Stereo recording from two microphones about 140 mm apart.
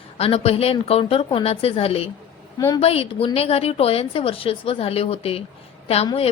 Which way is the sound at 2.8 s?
45° left (ahead or behind).